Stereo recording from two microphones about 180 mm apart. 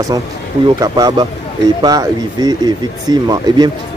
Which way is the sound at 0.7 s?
20° right (ahead or behind).